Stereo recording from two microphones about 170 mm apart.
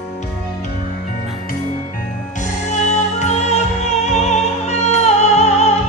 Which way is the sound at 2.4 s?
45° left (ahead or behind).